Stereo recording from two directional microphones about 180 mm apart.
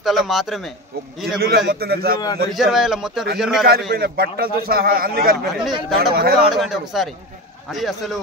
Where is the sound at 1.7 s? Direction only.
60° right (ahead or behind).